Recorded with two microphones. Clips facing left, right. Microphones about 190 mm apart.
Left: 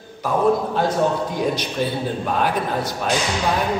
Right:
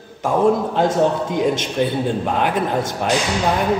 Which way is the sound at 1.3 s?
20° right (ahead or behind).